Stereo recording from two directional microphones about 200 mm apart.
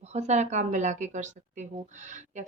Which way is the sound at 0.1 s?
35° right (ahead or behind).